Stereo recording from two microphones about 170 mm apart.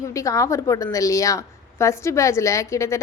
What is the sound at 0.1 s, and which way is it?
A woman's voice, 20° left (ahead or behind).